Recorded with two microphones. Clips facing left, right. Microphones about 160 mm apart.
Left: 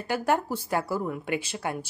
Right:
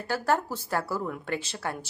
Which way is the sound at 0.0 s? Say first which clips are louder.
Left 1 dB; 15° left (ahead or behind).